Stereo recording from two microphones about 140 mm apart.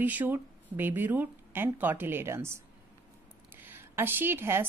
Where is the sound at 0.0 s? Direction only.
10° right (ahead or behind).